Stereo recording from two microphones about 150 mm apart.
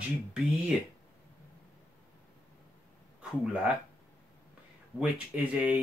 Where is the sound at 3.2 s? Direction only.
5° right (ahead or behind).